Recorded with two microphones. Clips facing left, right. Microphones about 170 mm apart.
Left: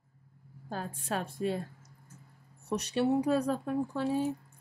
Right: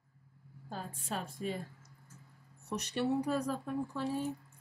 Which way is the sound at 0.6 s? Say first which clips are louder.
Left 5 dB; 75° left (ahead or behind).